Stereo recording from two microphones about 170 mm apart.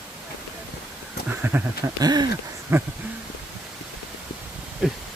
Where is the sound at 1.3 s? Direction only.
10° right (ahead or behind).